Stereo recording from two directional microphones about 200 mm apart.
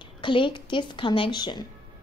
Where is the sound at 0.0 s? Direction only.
25° left (ahead or behind).